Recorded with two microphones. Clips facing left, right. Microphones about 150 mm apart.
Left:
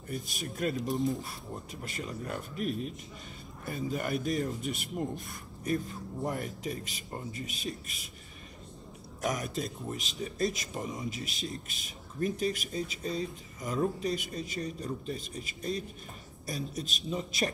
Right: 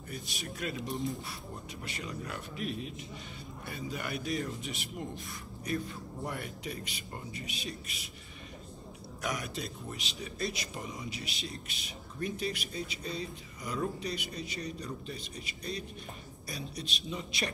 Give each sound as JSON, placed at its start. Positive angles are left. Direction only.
{"t": 0.1, "sound": "a man's voice", "side_deg": 50}
{"t": 0.8, "sound": "speech", "side_deg": 0}
{"t": 1.8, "sound": "a man's voice", "side_deg": 45}
{"t": 9.2, "sound": "a man's voice", "side_deg": 45}